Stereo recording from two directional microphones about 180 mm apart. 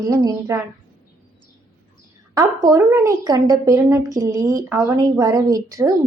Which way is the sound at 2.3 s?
20° right (ahead or behind).